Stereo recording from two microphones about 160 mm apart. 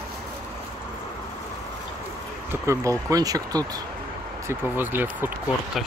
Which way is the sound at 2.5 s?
15° right (ahead or behind).